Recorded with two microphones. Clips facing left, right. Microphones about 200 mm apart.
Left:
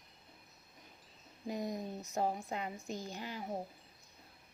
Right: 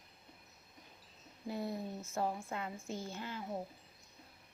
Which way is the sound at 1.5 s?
15° left (ahead or behind).